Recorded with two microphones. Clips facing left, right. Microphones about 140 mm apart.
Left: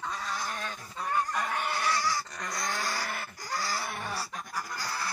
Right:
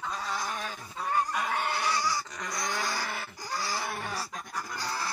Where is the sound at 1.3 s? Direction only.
10° right (ahead or behind).